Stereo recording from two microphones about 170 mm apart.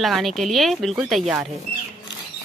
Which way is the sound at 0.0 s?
Centre (ahead or behind).